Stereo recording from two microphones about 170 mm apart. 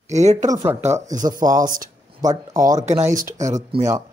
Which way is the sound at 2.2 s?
20° right (ahead or behind).